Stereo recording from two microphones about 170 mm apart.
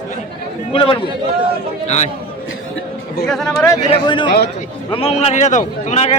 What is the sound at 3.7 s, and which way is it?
Speech, 25° left (ahead or behind).